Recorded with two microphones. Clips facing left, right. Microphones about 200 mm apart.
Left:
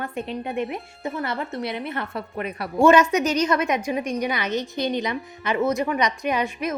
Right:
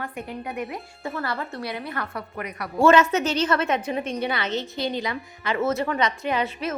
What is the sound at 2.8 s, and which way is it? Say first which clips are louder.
A woman's voice: left 1 dB; 15° left (ahead or behind).